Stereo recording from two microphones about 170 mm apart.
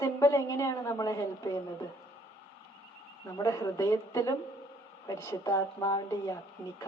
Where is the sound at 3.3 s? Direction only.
20° left (ahead or behind).